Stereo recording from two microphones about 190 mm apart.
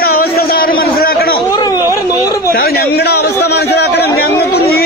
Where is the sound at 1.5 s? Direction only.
20° left (ahead or behind).